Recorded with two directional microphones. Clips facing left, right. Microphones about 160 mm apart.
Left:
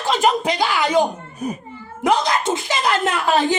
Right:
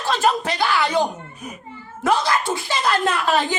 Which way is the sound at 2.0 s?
20° left (ahead or behind).